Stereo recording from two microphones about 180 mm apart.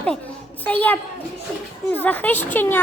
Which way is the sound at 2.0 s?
10° left (ahead or behind).